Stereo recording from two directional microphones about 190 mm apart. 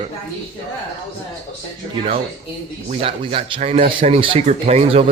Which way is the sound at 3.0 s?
30° right (ahead or behind).